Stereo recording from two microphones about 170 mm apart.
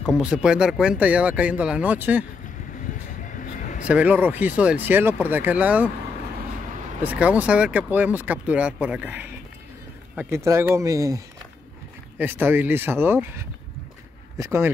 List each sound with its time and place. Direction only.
0.2 s speech: 5° right (ahead or behind)
3.3 s a sound: 50° left (ahead or behind)
3.8 s speech: 10° right (ahead or behind)
7.0 s speech: 10° right (ahead or behind)
14.4 s speech: 15° right (ahead or behind)